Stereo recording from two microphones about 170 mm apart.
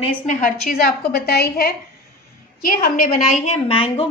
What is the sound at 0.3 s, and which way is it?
A woman's voice, 50° left (ahead or behind).